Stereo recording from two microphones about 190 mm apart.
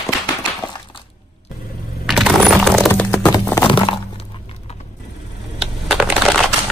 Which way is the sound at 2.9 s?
10° left (ahead or behind).